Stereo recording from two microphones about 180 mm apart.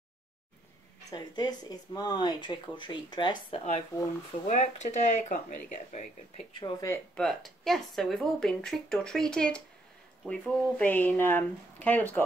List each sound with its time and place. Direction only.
1.1 s speech: 20° left (ahead or behind)
4.5 s speech: 40° left (ahead or behind)
6.5 s speech: 20° left (ahead or behind)
7.2 s speech: centre (ahead or behind)